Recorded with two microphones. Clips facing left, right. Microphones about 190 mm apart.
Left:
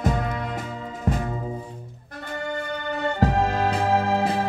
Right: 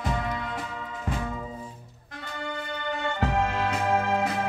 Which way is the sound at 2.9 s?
40° left (ahead or behind).